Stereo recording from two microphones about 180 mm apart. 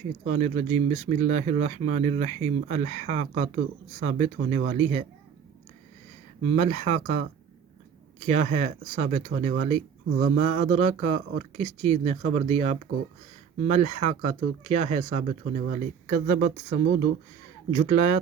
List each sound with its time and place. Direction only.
0.3 s speech: 40° right (ahead or behind)
6.6 s speech: 35° right (ahead or behind)
17.7 s speech: 40° right (ahead or behind)